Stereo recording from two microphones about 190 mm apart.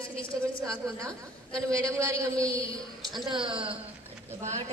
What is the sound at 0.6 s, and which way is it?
A man's voice, 15° right (ahead or behind).